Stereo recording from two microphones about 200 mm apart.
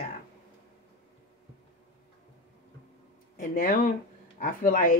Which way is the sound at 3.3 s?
45° left (ahead or behind).